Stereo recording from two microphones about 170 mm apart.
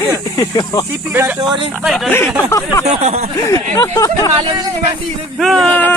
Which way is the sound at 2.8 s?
40° right (ahead or behind).